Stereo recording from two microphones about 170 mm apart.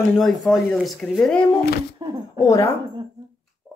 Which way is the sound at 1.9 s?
25° right (ahead or behind).